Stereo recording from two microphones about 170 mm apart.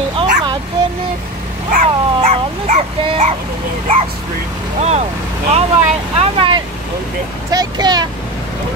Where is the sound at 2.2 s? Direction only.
45° right (ahead or behind).